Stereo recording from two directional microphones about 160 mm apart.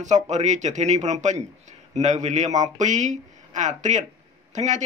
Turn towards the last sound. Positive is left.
turn(degrees=-50)  # may be behind; listen again after turning